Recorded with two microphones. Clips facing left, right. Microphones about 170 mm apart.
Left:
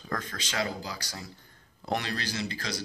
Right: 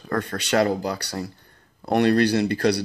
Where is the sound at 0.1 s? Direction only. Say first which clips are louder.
Right 12 dB; 60° right (ahead or behind).